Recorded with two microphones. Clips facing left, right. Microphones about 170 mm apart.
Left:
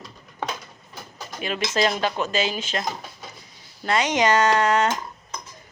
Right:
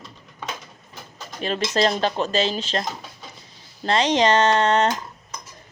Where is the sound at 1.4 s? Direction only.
35° right (ahead or behind).